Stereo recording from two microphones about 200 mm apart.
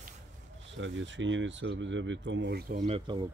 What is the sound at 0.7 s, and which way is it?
Speech, 65° right (ahead or behind).